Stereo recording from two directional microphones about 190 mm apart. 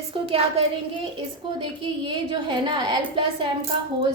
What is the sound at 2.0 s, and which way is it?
A woman's voice, 25° right (ahead or behind).